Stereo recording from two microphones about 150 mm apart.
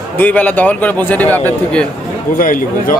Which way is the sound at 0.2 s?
10° left (ahead or behind).